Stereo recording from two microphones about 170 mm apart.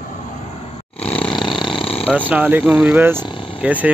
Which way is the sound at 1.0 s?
10° left (ahead or behind).